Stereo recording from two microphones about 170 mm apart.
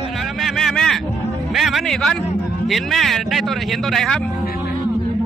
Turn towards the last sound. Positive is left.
turn(degrees=0)  # may be behind; listen again after turning